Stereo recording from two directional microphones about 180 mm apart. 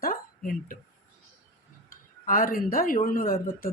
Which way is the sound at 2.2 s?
50° left (ahead or behind).